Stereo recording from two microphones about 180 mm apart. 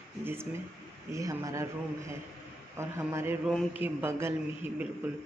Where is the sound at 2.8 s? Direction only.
15° right (ahead or behind).